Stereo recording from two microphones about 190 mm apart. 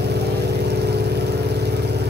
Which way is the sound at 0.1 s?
60° right (ahead or behind).